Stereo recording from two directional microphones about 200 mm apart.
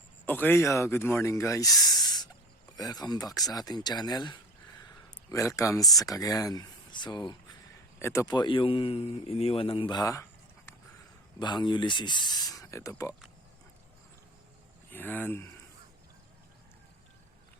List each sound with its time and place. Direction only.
0.3 s a man's voice: 10° left (ahead or behind)
11.3 s speech: 20° left (ahead or behind)
14.8 s speech: 10° left (ahead or behind)